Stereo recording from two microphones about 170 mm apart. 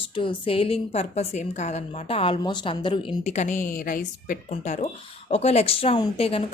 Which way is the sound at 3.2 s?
45° left (ahead or behind).